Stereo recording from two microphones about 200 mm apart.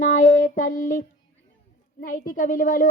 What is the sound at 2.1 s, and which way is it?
Speech, 40° left (ahead or behind).